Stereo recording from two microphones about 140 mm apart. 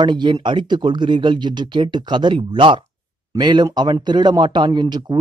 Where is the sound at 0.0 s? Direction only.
30° right (ahead or behind).